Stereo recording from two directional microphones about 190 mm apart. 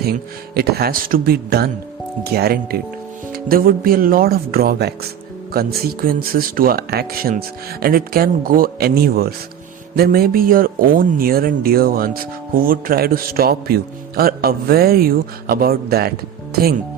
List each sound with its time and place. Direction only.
0.5 s speech: 55° right (ahead or behind)